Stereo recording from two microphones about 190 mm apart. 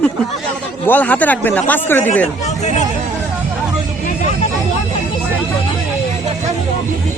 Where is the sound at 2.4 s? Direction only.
35° left (ahead or behind).